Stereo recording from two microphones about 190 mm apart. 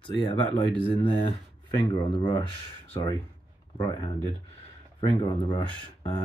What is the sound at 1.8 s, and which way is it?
Speech, 25° left (ahead or behind).